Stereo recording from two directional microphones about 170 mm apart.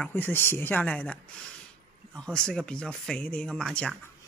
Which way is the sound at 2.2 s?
5° left (ahead or behind).